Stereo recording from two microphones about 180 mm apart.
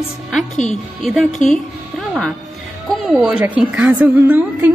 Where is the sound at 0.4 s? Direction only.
40° left (ahead or behind).